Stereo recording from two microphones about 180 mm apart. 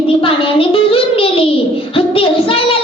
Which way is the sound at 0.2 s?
30° left (ahead or behind).